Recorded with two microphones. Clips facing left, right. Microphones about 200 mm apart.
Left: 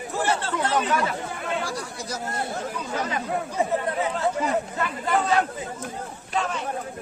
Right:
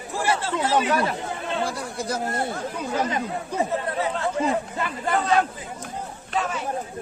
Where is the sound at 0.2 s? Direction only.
10° right (ahead or behind).